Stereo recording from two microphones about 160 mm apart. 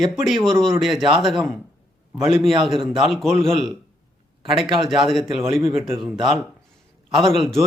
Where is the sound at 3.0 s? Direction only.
Centre (ahead or behind).